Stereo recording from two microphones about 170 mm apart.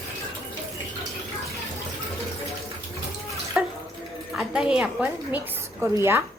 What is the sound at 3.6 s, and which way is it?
Bathtub, 5° right (ahead or behind).